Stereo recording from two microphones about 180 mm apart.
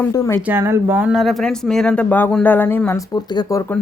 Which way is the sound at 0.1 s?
15° left (ahead or behind).